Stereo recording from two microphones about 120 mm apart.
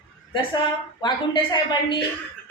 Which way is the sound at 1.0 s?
40° left (ahead or behind).